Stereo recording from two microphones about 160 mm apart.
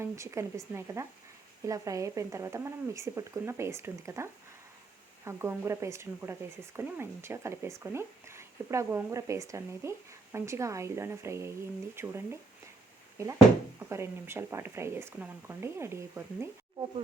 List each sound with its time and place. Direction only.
0.0 s speech: 15° right (ahead or behind)
13.7 s speech: 15° right (ahead or behind)